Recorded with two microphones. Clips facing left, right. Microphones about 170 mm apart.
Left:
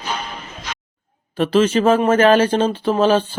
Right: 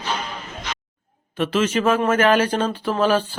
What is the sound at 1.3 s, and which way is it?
Speech, 35° left (ahead or behind).